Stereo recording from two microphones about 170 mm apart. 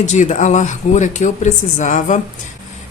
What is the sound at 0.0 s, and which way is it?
A woman's voice, 45° left (ahead or behind).